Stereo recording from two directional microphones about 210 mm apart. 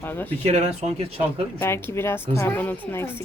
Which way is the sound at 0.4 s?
30° right (ahead or behind).